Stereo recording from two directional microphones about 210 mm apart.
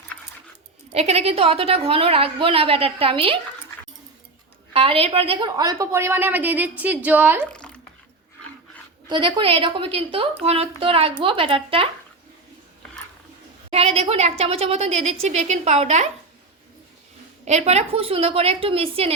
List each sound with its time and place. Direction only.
0.9 s a woman's voice: 30° right (ahead or behind)
4.7 s a woman's voice: 25° right (ahead or behind); by 7.4 s 10° right (ahead or behind)
7.5 s a sound: 5° left (ahead or behind)
9.0 s a woman's voice: 20° right (ahead or behind)
13.7 s a woman's voice: 30° right (ahead or behind)
17.4 s a woman's voice: 30° right (ahead or behind)